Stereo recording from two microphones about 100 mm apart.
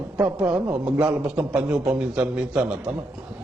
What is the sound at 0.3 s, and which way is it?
A woman's voice, 10° right (ahead or behind).